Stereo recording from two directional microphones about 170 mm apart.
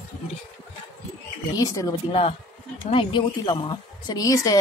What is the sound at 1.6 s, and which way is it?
Speech, 20° left (ahead or behind).